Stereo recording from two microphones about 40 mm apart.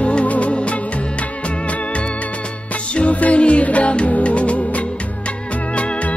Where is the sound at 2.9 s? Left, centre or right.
Left.